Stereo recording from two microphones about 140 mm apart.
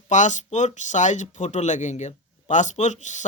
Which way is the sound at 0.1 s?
60° left (ahead or behind).